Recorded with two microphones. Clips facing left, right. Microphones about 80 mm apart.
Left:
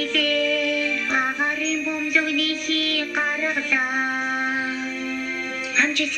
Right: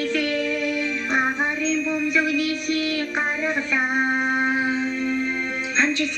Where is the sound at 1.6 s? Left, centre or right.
Right.